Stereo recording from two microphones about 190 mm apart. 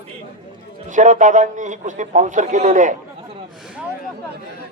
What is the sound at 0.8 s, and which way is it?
A man's voice, 40° right (ahead or behind).